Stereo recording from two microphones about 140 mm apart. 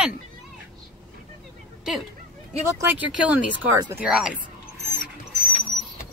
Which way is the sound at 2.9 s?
10° right (ahead or behind).